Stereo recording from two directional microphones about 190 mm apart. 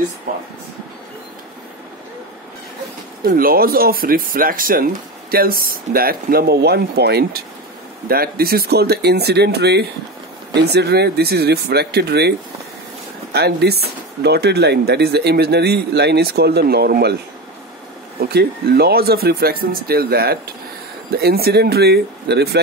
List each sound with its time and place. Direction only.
3.3 s speech: 50° right (ahead or behind)
18.3 s speech: 60° right (ahead or behind)